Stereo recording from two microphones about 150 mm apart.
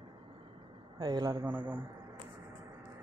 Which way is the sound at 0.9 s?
25° right (ahead or behind).